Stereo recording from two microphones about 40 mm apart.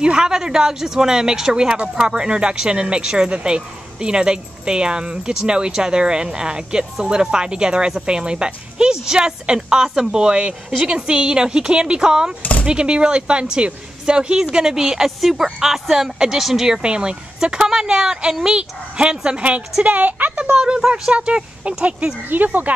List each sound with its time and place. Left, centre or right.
0.0 s a woman's voice: right
16.8 s a woman's voice: right
19.8 s a woman's voice: right
20.5 s a woman's voice: centre
22.3 s speech: right